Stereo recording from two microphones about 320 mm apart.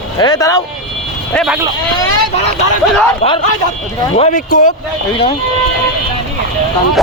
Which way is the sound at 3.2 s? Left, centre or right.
Centre.